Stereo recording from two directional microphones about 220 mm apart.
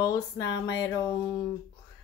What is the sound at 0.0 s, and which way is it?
Speech, 15° left (ahead or behind).